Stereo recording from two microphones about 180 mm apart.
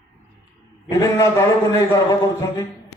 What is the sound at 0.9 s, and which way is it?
A man's voice, 15° left (ahead or behind).